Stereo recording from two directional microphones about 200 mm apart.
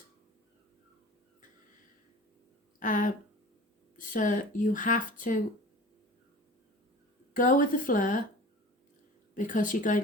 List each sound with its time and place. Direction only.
2.8 s speech: 40° left (ahead or behind)
7.3 s speech: 40° left (ahead or behind)
9.3 s speech: 40° left (ahead or behind)